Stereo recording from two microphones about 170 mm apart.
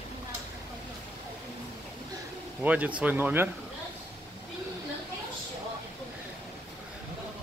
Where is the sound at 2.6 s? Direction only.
10° right (ahead or behind).